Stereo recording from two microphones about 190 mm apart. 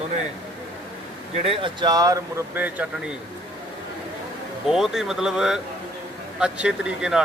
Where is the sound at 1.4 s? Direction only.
25° right (ahead or behind); by 3.1 s 10° right (ahead or behind).